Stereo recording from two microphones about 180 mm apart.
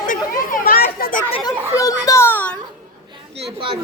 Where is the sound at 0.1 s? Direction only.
50° left (ahead or behind).